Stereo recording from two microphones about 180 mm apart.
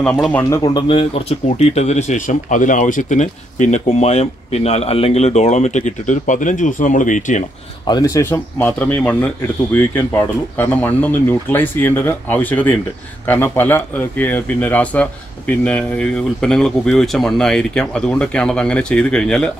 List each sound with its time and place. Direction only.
0.0 s speech: 5° left (ahead or behind)
0.8 s speech: 30° left (ahead or behind)
7.8 s speech: 20° left (ahead or behind)
10.6 s speech: 10° left (ahead or behind)